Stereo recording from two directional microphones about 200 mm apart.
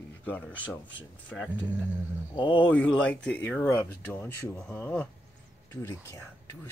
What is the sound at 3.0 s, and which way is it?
Speech, 5° left (ahead or behind).